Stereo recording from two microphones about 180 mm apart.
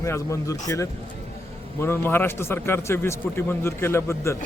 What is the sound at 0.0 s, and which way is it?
Speech, 15° left (ahead or behind).